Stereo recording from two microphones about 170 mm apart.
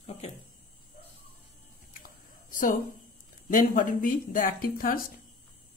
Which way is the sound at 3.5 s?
55° left (ahead or behind).